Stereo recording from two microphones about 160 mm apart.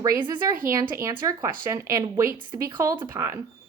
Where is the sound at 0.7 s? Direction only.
15° right (ahead or behind).